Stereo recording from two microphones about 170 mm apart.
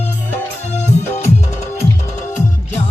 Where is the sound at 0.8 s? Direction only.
45° left (ahead or behind).